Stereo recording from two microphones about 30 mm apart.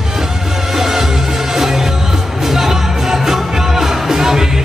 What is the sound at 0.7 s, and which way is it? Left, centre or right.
Music, centre.